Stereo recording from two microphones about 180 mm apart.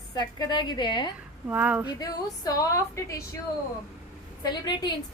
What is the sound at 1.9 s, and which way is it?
A woman's voice, 20° left (ahead or behind).